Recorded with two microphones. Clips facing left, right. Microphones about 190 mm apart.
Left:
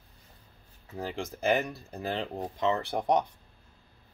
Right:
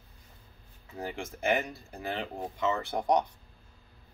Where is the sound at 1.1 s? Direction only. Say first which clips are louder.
Left 2 dB; 35° left (ahead or behind).